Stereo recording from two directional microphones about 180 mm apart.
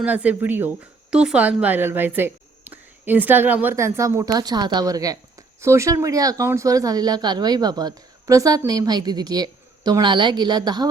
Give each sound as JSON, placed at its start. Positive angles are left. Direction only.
{"t": 0.0, "sound": "a woman's voice", "side_deg": -10}